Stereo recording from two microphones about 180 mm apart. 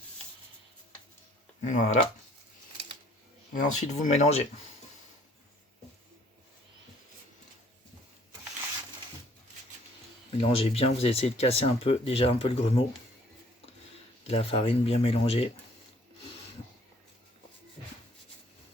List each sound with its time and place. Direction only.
1.6 s speech: 45° left (ahead or behind)
3.5 s speech: 40° left (ahead or behind)
10.5 s speech: 35° left (ahead or behind)
14.3 s speech: 30° left (ahead or behind)